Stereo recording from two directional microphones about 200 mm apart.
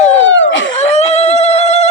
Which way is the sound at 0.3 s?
65° left (ahead or behind).